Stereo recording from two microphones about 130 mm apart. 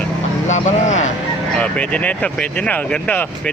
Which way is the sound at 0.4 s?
65° left (ahead or behind).